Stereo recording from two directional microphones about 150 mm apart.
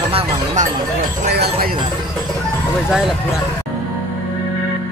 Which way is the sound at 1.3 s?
85° right.